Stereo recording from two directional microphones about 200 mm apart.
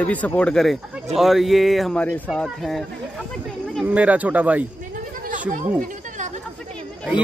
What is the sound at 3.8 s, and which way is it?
Speech, 5° right (ahead or behind).